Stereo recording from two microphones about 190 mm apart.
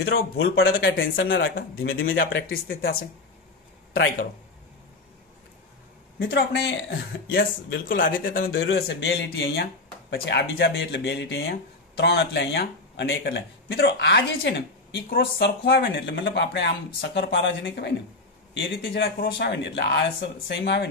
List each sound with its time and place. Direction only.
0.0 s speech: 55° left (ahead or behind); by 0.9 s 75° left (ahead or behind)
0.9 s a man's voice: 50° left (ahead or behind)
6.1 s speech: 65° left (ahead or behind); by 8.5 s 50° left (ahead or behind)
8.5 s speech: 85° left
8.7 s speech: 65° left (ahead or behind)
15.0 s speech: 55° left (ahead or behind)
19.1 s speech: 60° left (ahead or behind)